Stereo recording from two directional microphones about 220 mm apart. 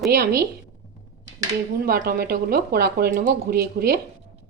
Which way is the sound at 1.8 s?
40° right (ahead or behind).